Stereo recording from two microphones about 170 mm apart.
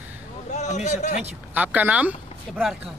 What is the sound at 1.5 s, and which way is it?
Speech, 10° right (ahead or behind).